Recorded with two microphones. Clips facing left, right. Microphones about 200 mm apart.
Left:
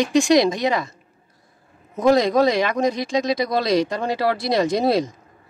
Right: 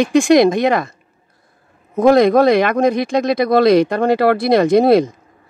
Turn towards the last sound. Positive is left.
turn(degrees=-55)  # may be behind; listen again after turning